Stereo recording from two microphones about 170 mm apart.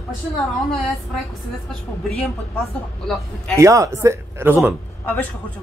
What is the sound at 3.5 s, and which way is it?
Speech, 20° right (ahead or behind).